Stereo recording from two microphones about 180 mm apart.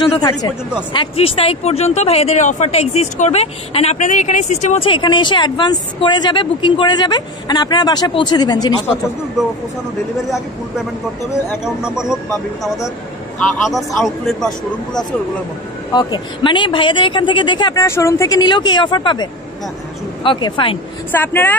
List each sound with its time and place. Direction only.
0.0 s speech: 25° left (ahead or behind)
11.6 s speech: 5° right (ahead or behind)
13.4 s speech: centre (ahead or behind)
15.9 s speech: 20° left (ahead or behind)
17.8 s speech: 15° left (ahead or behind)
20.2 s speech: 25° left (ahead or behind)
21.1 s speech: 10° left (ahead or behind)